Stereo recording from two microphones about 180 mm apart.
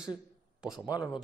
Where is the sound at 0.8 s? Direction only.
20° left (ahead or behind).